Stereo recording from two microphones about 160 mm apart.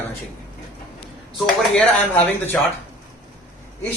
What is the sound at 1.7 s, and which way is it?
Speech, 10° left (ahead or behind).